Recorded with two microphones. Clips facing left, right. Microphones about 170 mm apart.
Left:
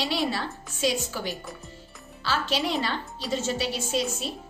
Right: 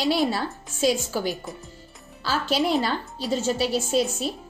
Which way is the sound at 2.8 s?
40° right (ahead or behind).